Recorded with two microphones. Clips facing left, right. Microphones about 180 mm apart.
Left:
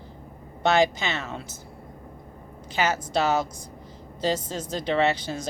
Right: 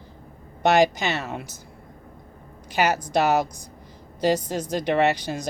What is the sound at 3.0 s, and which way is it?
Speech, 15° right (ahead or behind).